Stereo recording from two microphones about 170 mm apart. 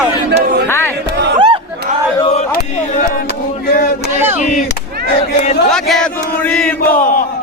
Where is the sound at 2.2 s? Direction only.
35° left (ahead or behind).